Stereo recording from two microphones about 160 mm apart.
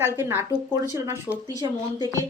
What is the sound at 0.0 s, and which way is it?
A woman's voice, 15° right (ahead or behind).